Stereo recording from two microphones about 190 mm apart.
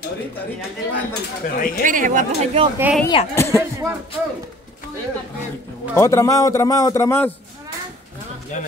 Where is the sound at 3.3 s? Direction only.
15° left (ahead or behind).